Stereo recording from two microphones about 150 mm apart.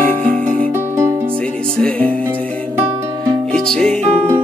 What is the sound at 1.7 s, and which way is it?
Music, 5° left (ahead or behind).